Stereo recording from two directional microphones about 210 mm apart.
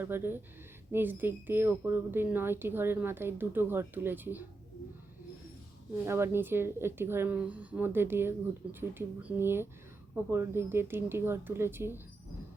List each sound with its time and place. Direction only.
0.0 s speech: 10° right (ahead or behind)
6.1 s speech: 10° right (ahead or behind)